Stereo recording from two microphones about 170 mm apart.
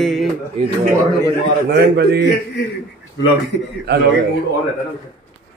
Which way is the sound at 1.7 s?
80° right.